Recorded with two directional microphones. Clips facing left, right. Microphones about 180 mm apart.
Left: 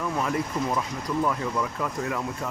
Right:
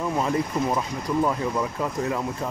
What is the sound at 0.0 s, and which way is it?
Speech, 25° right (ahead or behind).